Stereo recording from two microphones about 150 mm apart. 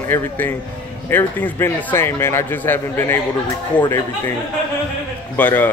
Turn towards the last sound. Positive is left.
turn(degrees=10)  # may be behind; listen again after turning